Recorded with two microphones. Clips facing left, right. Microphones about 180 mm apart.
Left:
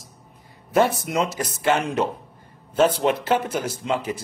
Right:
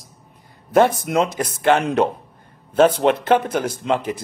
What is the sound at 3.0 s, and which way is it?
A man's voice, 55° right (ahead or behind).